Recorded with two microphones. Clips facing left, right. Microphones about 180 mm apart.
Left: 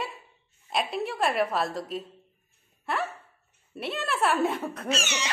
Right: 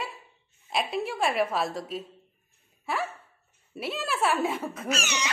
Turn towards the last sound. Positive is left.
turn(degrees=30)  # may be behind; listen again after turning